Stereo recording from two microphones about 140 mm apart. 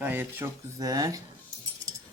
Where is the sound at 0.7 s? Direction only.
25° right (ahead or behind).